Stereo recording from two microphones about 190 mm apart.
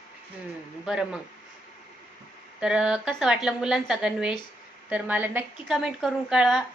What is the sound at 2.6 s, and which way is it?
A woman's voice, 5° right (ahead or behind).